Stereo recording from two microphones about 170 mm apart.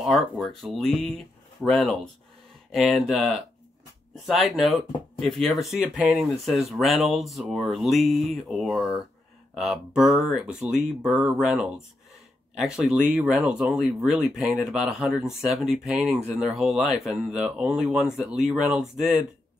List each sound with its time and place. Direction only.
0.0 s speech: centre (ahead or behind)